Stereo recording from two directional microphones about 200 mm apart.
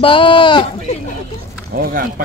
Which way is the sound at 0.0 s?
25° left (ahead or behind).